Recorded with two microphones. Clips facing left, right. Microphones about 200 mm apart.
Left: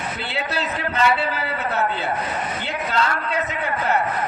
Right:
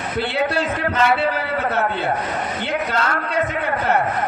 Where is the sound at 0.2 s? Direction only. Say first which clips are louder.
Right 9 dB; 50° right (ahead or behind).